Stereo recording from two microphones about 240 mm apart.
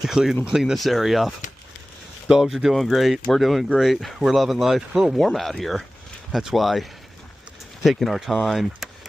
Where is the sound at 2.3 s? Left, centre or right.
Centre.